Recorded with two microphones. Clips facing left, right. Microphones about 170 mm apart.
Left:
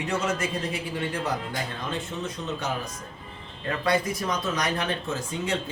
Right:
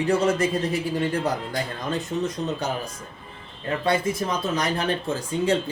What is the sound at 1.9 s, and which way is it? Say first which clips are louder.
Speech: right 6 dB; 40° right (ahead or behind).